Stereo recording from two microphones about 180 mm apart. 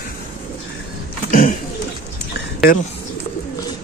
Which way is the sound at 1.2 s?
50° left (ahead or behind).